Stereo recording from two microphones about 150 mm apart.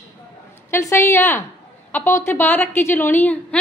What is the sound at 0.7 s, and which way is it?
A woman's voice, 15° left (ahead or behind).